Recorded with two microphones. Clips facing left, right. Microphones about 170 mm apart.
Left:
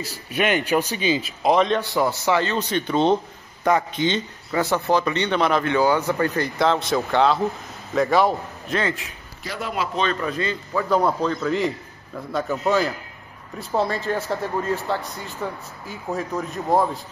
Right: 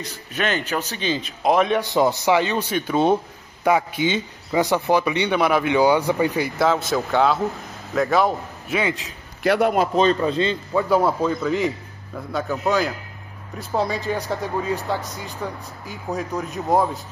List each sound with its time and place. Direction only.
0.0 s a man's voice: 10° left (ahead or behind)
1.8 s a man's voice: 20° right (ahead or behind)
9.4 s a man's voice: 65° right (ahead or behind)
9.8 s speech: 40° right (ahead or behind)
10.2 s speech: 25° right (ahead or behind)
10.9 s a man's voice: 5° right (ahead or behind)